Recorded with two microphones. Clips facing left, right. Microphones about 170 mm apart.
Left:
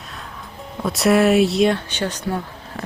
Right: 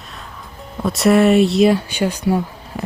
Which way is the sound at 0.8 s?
Centre (ahead or behind).